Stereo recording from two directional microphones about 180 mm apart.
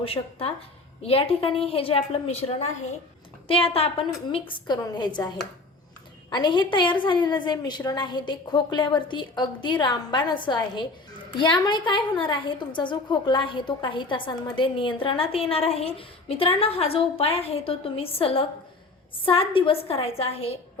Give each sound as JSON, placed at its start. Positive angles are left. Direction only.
{"t": 0.0, "sound": "a woman's voice", "side_deg": 30}
{"t": 6.3, "sound": "a woman's voice", "side_deg": 25}